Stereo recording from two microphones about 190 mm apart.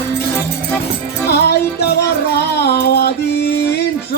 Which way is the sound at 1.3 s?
60° left (ahead or behind).